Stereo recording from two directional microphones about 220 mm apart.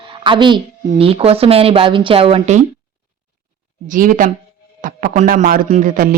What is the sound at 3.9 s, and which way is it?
Speech, 35° right (ahead or behind).